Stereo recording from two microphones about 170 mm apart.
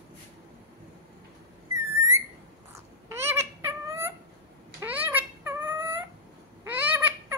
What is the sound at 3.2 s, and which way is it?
Cat, 15° right (ahead or behind).